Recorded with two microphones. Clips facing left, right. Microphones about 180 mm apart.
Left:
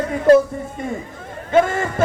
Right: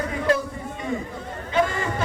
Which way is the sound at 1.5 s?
45° left (ahead or behind).